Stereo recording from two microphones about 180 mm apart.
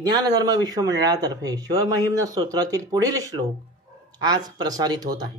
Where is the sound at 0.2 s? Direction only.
20° right (ahead or behind).